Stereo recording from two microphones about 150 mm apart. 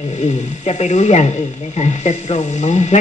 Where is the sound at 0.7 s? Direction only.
45° left (ahead or behind).